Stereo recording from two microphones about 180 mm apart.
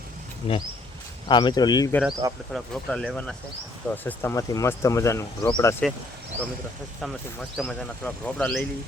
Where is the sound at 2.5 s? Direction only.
5° left (ahead or behind).